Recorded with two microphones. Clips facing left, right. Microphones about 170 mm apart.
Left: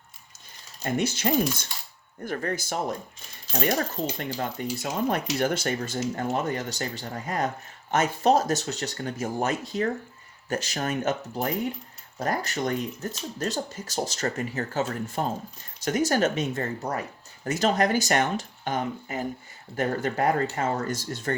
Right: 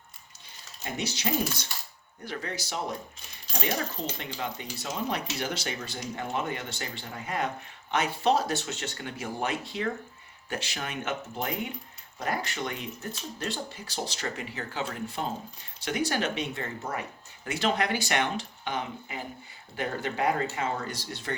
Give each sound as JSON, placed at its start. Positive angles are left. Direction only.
{"t": 0.9, "sound": "speech", "side_deg": 50}